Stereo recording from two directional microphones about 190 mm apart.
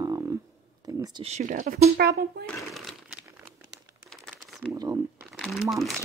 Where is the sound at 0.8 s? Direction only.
20° right (ahead or behind).